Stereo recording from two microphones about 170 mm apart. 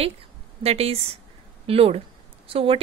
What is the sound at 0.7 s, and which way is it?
A woman's voice, 35° right (ahead or behind).